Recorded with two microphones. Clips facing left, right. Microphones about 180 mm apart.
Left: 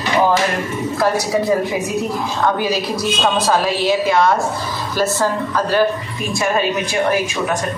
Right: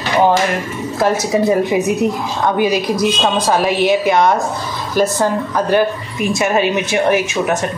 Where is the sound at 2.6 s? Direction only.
15° right (ahead or behind).